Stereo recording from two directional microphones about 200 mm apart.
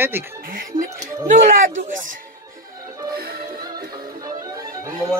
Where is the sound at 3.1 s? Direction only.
50° right (ahead or behind).